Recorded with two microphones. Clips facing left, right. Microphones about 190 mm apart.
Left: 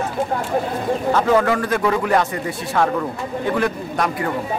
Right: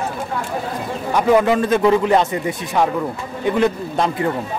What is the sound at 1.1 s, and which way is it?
A man's voice, 20° right (ahead or behind).